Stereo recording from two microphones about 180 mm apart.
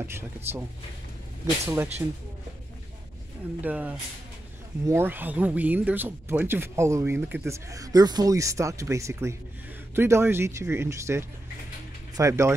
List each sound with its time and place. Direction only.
0.0 s speech: 15° right (ahead or behind)
1.7 s speech: 15° right (ahead or behind)
3.6 s speech: 10° right (ahead or behind)